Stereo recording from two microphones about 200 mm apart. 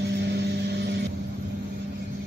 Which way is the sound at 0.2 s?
60° right (ahead or behind).